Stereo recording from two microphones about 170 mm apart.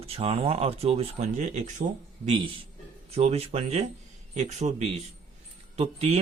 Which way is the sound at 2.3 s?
30° right (ahead or behind).